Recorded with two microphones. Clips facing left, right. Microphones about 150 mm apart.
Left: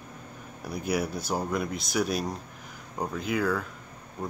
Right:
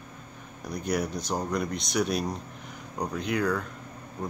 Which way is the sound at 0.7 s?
5° left (ahead or behind).